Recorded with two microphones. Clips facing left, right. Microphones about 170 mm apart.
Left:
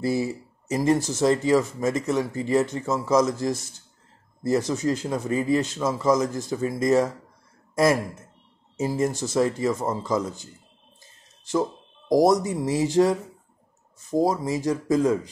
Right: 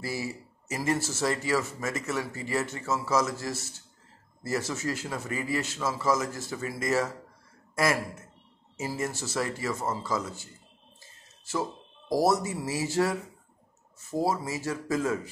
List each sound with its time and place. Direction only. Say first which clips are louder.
0.7 s speech: left 7 dB; 15° left (ahead or behind)
12.1 s speech: left 6 dB; 15° left (ahead or behind)